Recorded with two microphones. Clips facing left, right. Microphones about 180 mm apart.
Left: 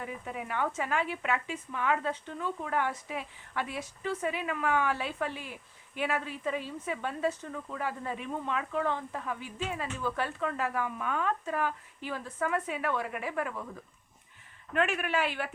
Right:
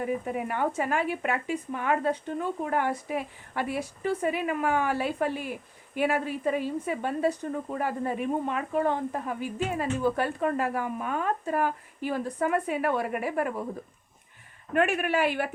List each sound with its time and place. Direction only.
0.0 s speech: 45° right (ahead or behind)
14.7 s speech: 45° right (ahead or behind)